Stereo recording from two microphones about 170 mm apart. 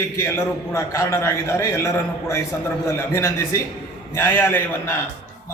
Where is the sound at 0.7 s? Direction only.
15° left (ahead or behind).